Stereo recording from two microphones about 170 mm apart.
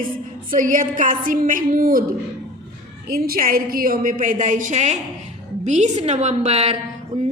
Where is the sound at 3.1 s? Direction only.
60° right (ahead or behind).